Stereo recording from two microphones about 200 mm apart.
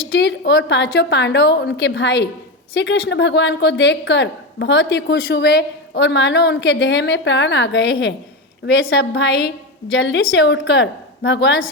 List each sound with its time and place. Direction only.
0.1 s speech: 60° left (ahead or behind)